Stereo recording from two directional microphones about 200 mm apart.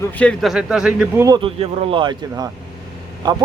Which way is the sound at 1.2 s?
25° right (ahead or behind).